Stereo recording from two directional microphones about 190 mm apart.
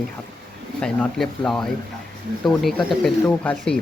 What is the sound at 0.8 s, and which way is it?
Speech, 5° left (ahead or behind).